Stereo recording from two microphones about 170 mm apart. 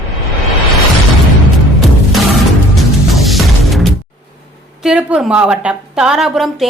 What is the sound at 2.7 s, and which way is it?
Music, centre (ahead or behind).